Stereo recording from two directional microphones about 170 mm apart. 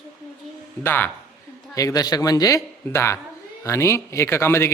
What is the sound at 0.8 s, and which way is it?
A man's voice, 15° left (ahead or behind).